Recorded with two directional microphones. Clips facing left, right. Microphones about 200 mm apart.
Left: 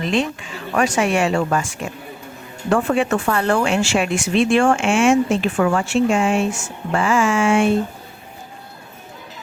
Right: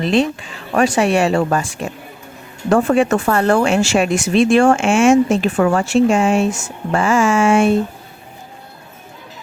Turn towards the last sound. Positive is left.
turn(degrees=-40)  # may be behind; listen again after turning